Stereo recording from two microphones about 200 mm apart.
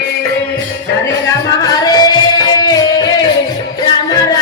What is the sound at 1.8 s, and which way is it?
Music, 20° left (ahead or behind).